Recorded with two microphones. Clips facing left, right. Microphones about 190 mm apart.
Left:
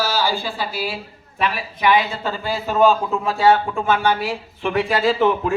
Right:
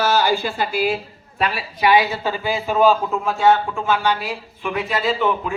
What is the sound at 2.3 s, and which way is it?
A man's voice, 10° right (ahead or behind).